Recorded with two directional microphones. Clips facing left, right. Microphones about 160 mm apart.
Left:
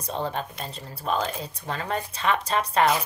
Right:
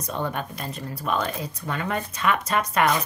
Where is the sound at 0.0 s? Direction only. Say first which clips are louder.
Right 1 dB; 30° left (ahead or behind).